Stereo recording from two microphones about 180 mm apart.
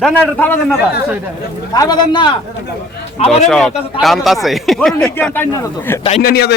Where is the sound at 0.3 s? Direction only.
10° left (ahead or behind).